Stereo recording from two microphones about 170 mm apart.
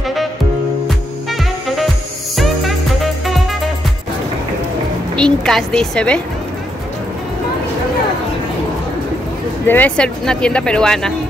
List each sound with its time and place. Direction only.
0.0 s music: centre (ahead or behind)
5.1 s speech: 5° left (ahead or behind)
9.7 s speech: 10° left (ahead or behind)